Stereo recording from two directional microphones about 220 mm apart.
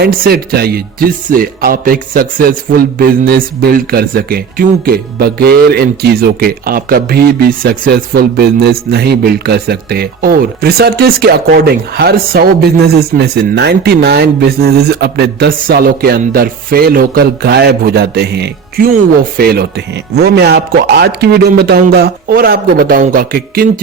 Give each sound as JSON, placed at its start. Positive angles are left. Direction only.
{"t": 0.0, "sound": "speech", "side_deg": -45}